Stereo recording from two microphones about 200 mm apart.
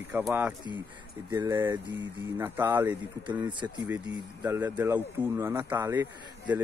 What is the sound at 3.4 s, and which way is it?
Speech, 20° right (ahead or behind).